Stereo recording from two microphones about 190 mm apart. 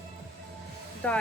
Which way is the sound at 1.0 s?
5° left (ahead or behind).